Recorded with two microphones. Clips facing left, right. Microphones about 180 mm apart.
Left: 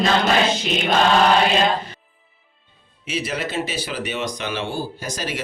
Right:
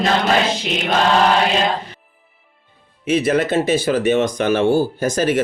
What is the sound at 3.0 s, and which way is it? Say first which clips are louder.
Speech: right 10 dB; 50° right (ahead or behind).